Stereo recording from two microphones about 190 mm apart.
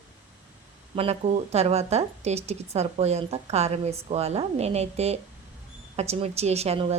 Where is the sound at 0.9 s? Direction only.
35° right (ahead or behind).